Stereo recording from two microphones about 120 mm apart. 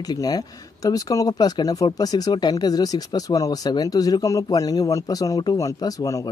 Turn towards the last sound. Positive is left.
turn(degrees=30)  # may be behind; listen again after turning